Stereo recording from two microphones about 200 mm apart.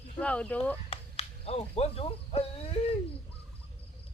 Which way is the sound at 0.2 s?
5° left (ahead or behind).